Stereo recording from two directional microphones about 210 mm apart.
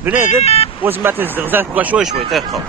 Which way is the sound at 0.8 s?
10° right (ahead or behind).